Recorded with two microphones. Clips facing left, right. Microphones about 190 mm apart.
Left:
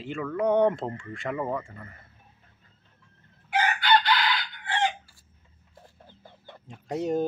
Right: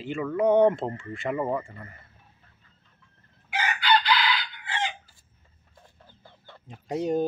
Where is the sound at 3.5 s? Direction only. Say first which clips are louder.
Left 2 dB; 55° left (ahead or behind).